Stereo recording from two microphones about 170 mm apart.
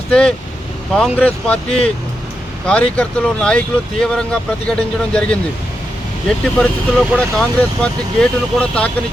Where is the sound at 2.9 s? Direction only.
5° left (ahead or behind).